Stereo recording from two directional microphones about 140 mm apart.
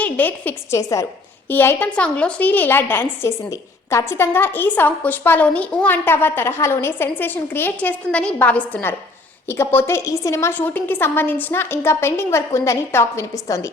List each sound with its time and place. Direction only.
0.0 s a woman's voice: 10° left (ahead or behind)
0.8 s a woman's voice: 25° left (ahead or behind)